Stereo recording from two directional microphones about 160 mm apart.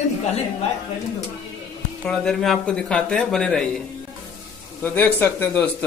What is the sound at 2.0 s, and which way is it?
Speech, 5° left (ahead or behind).